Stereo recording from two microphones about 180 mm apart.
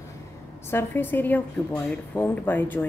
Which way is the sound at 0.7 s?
15° left (ahead or behind).